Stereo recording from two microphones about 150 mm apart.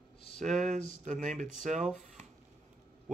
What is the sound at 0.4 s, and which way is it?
Speech, 55° right (ahead or behind).